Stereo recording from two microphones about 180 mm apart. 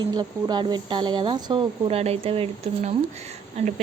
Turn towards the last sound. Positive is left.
turn(degrees=-35)  # may be behind; listen again after turning